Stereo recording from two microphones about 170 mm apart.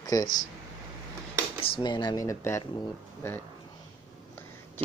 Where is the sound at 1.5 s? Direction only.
30° left (ahead or behind); by 3.4 s 15° left (ahead or behind).